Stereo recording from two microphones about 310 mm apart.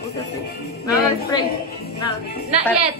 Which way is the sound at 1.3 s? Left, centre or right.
Centre.